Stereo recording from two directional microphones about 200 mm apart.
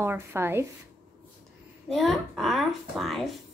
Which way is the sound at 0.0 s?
10° right (ahead or behind).